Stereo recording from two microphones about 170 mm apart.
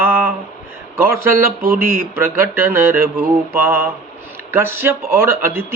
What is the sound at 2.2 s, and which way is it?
Speech, 15° right (ahead or behind).